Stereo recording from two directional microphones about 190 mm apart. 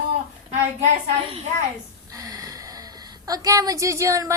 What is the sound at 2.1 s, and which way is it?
A woman's voice, 15° right (ahead or behind).